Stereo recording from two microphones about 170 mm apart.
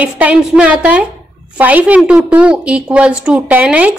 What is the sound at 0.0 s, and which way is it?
A woman's voice, 10° right (ahead or behind).